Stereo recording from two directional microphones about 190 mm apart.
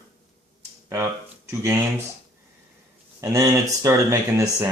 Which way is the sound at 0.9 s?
15° right (ahead or behind).